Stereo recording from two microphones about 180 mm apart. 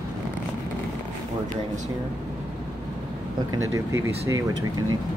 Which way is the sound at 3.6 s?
15° right (ahead or behind).